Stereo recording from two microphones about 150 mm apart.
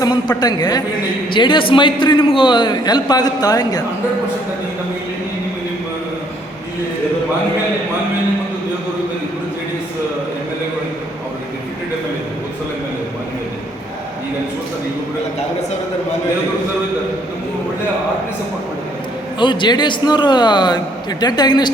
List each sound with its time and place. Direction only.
0.0 s a man's voice: 30° left (ahead or behind)
19.4 s a man's voice: 30° left (ahead or behind)